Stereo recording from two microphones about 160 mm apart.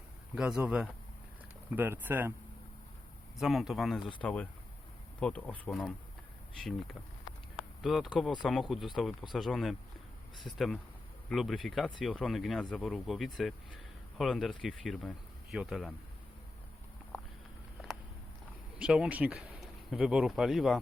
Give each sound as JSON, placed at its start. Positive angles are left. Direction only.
{"t": 0.3, "sound": "speech", "side_deg": -5}
{"t": 3.3, "sound": "speech", "side_deg": 0}
{"t": 7.8, "sound": "speech", "side_deg": 0}
{"t": 18.8, "sound": "speech", "side_deg": -5}